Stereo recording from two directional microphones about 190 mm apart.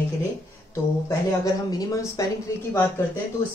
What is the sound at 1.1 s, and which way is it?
A woman's voice, 20° left (ahead or behind).